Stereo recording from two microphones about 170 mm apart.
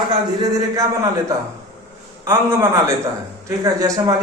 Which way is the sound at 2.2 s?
15° right (ahead or behind).